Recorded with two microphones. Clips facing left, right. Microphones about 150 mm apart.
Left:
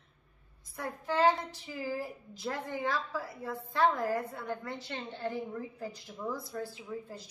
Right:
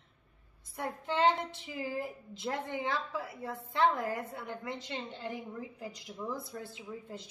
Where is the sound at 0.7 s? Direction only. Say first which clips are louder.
Left 1 dB; 25° right (ahead or behind).